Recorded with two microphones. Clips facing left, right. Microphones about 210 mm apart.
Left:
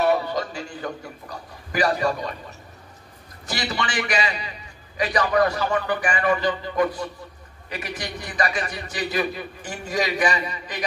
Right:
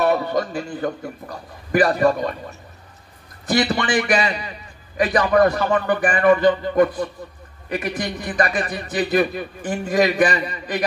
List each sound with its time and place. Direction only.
0.0 s a man's voice: 50° right (ahead or behind)
3.4 s a man's voice: 55° right (ahead or behind)